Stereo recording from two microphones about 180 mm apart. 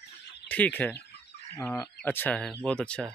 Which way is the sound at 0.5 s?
10° left (ahead or behind).